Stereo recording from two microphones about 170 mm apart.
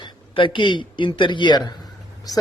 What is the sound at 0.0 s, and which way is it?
A man's voice, 30° left (ahead or behind).